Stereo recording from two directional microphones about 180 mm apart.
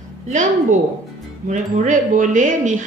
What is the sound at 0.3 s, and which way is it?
A woman's voice, 45° right (ahead or behind).